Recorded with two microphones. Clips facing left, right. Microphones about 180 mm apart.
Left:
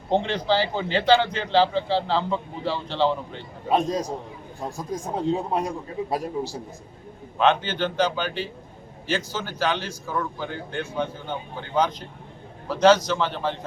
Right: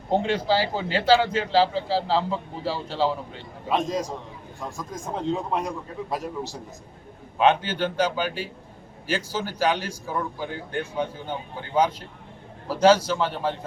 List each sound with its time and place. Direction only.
0.1 s speech: 5° right (ahead or behind)
3.7 s speech: 35° left (ahead or behind)
7.3 s a man's voice: 10° right (ahead or behind)